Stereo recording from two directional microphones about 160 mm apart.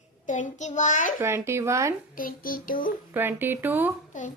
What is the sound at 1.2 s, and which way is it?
Speech, 15° right (ahead or behind).